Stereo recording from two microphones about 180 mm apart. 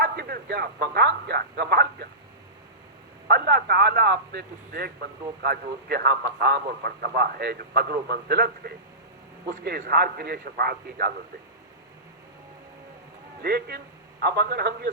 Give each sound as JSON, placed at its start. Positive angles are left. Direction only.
{"t": 0.0, "sound": "a man's voice", "side_deg": -60}
{"t": 3.2, "sound": "a man's voice", "side_deg": -60}
{"t": 13.4, "sound": "a man's voice", "side_deg": -60}